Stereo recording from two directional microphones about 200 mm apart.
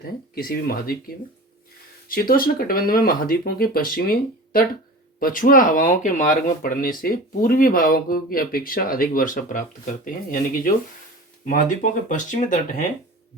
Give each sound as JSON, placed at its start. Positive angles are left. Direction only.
{"t": 0.3, "sound": "speech", "side_deg": 50}